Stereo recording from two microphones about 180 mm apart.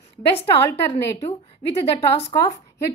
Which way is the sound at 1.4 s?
35° left (ahead or behind).